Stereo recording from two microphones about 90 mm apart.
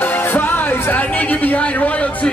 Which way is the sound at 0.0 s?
25° left (ahead or behind).